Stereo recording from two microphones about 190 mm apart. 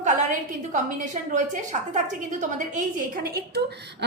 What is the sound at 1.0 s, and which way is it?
A woman's voice, 40° right (ahead or behind).